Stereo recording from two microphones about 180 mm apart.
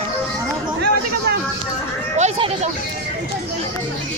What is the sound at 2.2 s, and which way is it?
Speech, 40° right (ahead or behind).